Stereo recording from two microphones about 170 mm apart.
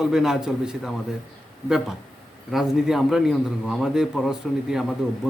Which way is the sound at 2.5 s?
Centre (ahead or behind).